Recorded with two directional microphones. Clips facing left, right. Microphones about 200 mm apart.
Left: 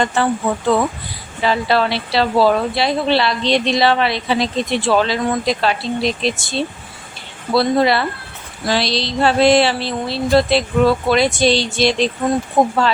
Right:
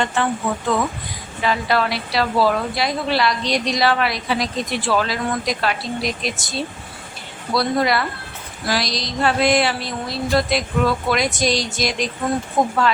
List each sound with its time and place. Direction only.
0.7 s a woman's voice: 30° left (ahead or behind)